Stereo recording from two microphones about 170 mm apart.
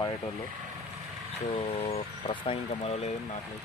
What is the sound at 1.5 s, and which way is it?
Speech, 35° left (ahead or behind).